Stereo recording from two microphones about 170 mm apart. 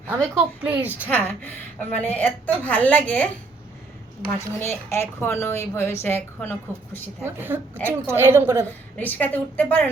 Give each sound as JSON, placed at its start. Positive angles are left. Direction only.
{"t": 0.3, "sound": "a woman's voice", "side_deg": -10}
{"t": 1.0, "sound": "a woman's voice", "side_deg": 10}
{"t": 4.3, "sound": "a woman's voice", "side_deg": 15}
{"t": 7.3, "sound": "a woman's voice", "side_deg": -10}
{"t": 9.0, "sound": "a woman's voice", "side_deg": 10}